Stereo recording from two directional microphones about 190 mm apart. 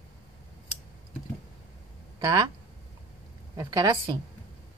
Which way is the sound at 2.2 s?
20° right (ahead or behind).